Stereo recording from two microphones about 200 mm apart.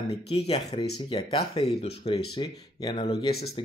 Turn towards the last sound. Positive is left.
turn(degrees=25)  # may be behind; listen again after turning